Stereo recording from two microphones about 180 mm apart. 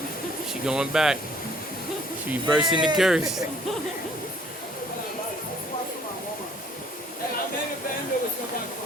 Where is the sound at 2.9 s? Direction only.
Centre (ahead or behind).